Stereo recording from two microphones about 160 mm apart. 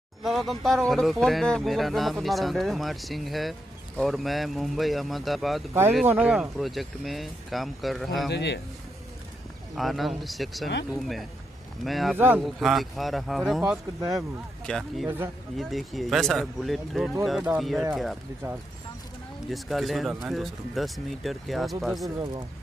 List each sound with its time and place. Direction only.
0.2 s speech: centre (ahead or behind)
5.7 s speech: 15° right (ahead or behind)
8.3 s a man's voice: 90° left
9.8 s speech: centre (ahead or behind)
19.5 s speech: centre (ahead or behind)